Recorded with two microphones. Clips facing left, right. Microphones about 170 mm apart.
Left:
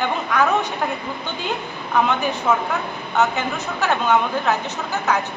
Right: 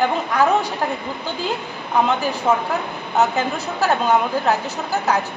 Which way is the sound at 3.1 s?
35° right (ahead or behind).